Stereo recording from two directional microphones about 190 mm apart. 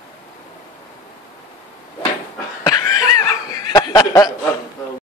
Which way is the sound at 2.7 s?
20° left (ahead or behind).